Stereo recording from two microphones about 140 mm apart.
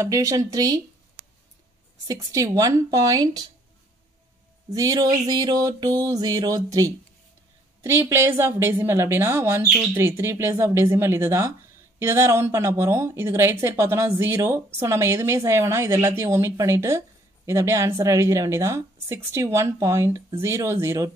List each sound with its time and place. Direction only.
0.0 s speech: 20° right (ahead or behind)
2.0 s speech: 25° right (ahead or behind)
4.6 s a woman's voice: 25° right (ahead or behind)